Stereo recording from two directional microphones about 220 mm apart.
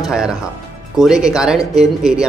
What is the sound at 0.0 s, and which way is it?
Speech, 5° right (ahead or behind).